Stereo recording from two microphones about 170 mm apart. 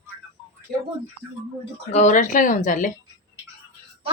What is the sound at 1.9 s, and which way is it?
Speech, 45° left (ahead or behind).